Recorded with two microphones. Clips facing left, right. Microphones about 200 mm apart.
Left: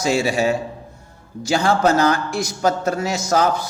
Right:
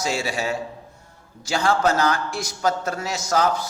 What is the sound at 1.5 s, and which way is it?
A man's voice, 20° left (ahead or behind).